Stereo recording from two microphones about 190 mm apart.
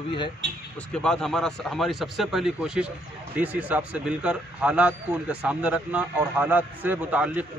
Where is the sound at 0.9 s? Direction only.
5° left (ahead or behind).